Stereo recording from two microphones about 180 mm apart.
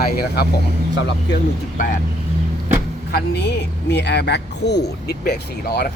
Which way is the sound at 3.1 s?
65° left (ahead or behind).